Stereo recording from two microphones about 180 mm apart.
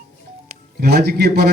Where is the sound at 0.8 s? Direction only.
60° right (ahead or behind).